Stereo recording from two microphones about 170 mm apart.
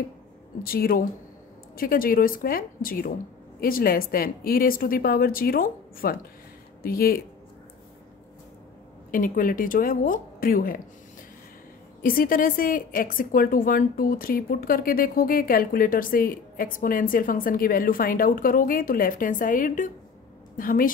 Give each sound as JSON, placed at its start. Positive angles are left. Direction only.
{"t": 0.7, "sound": "a woman's voice", "side_deg": 60}
{"t": 9.1, "sound": "a woman's voice", "side_deg": 55}
{"t": 12.0, "sound": "a woman's voice", "side_deg": 55}